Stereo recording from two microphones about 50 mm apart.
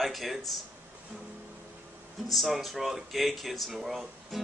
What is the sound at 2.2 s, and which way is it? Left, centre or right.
Speech, centre.